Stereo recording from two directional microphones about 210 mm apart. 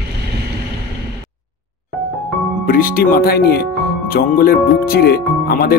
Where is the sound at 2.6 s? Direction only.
45° left (ahead or behind).